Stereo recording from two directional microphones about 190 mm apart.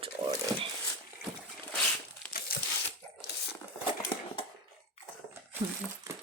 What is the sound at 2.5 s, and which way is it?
Crumpling, 50° left (ahead or behind).